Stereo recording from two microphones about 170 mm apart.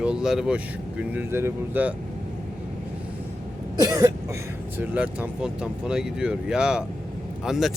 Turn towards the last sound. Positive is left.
turn(degrees=0)  # may be behind; listen again after turning